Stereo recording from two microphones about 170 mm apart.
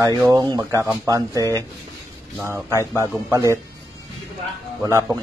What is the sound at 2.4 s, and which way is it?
Speech, 15° right (ahead or behind).